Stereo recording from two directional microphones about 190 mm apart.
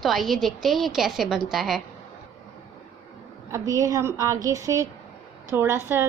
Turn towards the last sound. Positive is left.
turn(degrees=-10)  # may be behind; listen again after turning